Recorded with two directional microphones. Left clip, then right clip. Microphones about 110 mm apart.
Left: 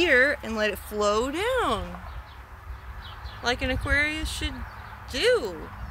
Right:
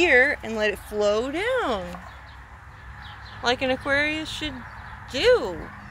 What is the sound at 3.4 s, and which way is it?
Speech, 20° left (ahead or behind).